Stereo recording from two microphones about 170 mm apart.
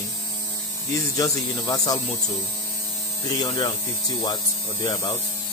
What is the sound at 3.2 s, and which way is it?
Speech, 25° left (ahead or behind).